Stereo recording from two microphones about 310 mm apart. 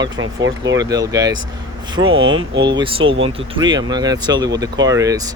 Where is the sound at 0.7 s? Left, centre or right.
Centre.